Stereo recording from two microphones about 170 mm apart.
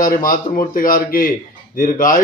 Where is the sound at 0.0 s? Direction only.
55° left (ahead or behind).